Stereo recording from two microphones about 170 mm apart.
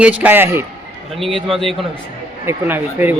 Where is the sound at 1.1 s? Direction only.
Centre (ahead or behind).